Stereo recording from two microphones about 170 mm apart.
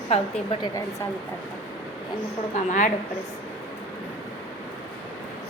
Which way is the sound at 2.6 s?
45° left (ahead or behind).